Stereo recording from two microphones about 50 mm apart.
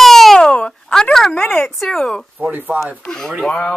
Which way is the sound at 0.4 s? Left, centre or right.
Left.